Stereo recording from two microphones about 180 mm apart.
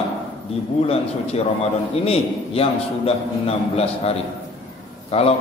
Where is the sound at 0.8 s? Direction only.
35° left (ahead or behind).